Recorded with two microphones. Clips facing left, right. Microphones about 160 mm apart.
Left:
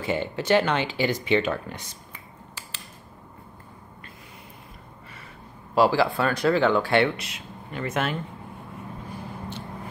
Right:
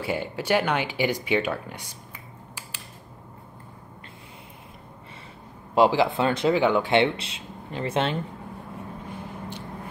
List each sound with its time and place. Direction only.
0.0 s speech: 10° right (ahead or behind)
5.8 s speech: 20° right (ahead or behind)